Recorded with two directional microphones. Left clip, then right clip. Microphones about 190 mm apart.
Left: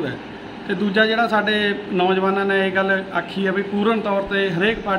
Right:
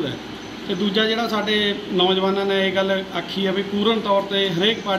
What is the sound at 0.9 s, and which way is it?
A man's voice, 10° left (ahead or behind).